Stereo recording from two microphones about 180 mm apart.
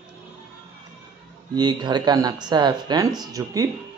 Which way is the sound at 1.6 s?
25° right (ahead or behind).